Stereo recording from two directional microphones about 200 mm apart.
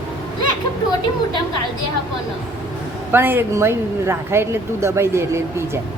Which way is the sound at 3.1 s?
10° right (ahead or behind).